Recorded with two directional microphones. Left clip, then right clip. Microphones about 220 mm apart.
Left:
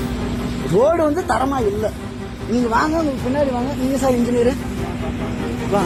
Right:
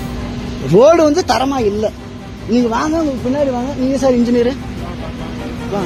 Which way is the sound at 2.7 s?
40° right (ahead or behind).